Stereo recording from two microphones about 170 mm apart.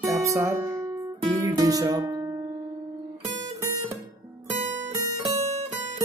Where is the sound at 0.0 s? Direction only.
20° right (ahead or behind).